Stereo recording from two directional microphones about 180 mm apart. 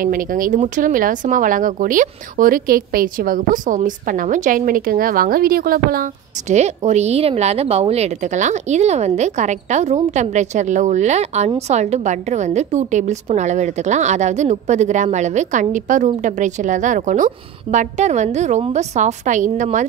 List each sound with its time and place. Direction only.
0.0 s speech: 50° right (ahead or behind)